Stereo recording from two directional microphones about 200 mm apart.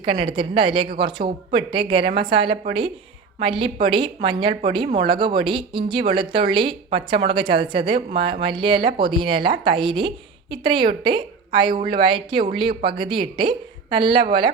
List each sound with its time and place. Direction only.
0.0 s speech: 25° right (ahead or behind)